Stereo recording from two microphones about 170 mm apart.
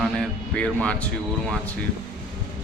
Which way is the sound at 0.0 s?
5° left (ahead or behind).